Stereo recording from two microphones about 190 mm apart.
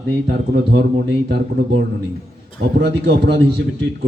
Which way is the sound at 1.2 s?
70° right (ahead or behind).